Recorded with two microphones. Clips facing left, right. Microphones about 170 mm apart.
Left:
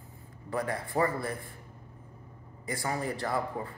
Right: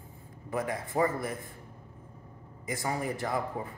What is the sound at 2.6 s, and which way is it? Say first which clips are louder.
A man's voice: even; 15° right (ahead or behind).